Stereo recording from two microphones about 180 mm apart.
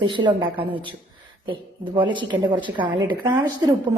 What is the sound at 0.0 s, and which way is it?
Speech, 25° right (ahead or behind).